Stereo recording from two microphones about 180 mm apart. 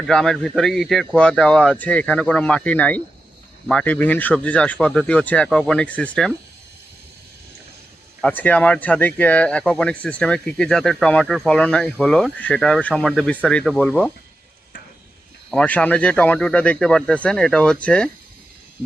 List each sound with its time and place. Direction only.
0.1 s speech: 5° left (ahead or behind)
8.2 s speech: 10° left (ahead or behind)
15.4 s speech: 5° left (ahead or behind)